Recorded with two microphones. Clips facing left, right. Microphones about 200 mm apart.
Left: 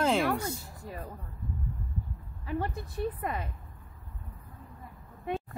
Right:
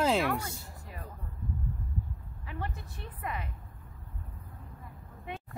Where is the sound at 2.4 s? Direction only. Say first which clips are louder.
Left 7 dB; 40° left (ahead or behind).